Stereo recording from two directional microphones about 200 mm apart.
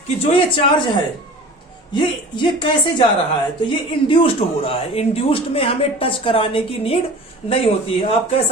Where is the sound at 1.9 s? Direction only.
25° left (ahead or behind).